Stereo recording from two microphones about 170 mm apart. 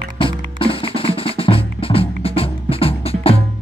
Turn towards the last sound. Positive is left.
turn(degrees=35)  # may be behind; listen again after turning